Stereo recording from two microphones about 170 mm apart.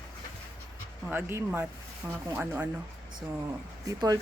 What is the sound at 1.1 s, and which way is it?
Speech, 15° right (ahead or behind).